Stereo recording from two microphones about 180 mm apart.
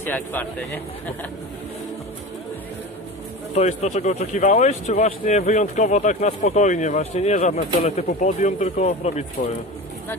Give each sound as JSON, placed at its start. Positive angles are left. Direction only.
{"t": 0.0, "sound": "speech", "side_deg": 10}
{"t": 3.5, "sound": "speech", "side_deg": 35}